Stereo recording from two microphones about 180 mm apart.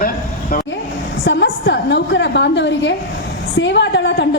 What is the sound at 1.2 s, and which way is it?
A woman's voice, 75° left (ahead or behind).